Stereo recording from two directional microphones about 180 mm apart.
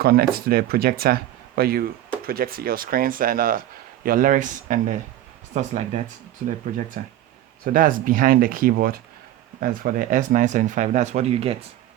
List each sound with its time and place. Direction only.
0.0 s speech: 55° right (ahead or behind); by 11.5 s 35° right (ahead or behind)